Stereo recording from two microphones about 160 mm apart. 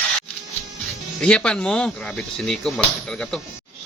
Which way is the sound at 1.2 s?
5° left (ahead or behind).